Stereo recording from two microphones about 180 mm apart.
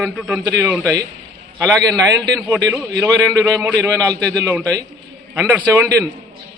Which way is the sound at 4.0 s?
5° left (ahead or behind).